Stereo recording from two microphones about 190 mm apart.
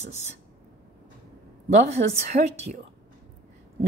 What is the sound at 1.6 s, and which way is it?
A woman's voice, 35° right (ahead or behind).